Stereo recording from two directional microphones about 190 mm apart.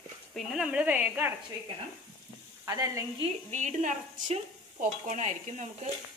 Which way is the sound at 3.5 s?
40° right (ahead or behind).